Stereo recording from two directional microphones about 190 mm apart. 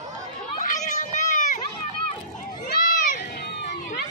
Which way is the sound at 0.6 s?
40° left (ahead or behind).